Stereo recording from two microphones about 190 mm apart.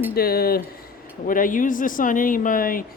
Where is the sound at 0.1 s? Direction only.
55° left (ahead or behind).